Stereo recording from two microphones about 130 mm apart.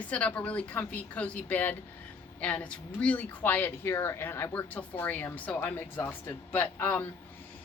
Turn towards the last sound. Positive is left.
turn(degrees=15)  # may be behind; listen again after turning